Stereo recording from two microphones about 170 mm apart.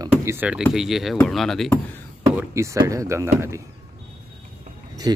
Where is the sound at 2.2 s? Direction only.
15° right (ahead or behind).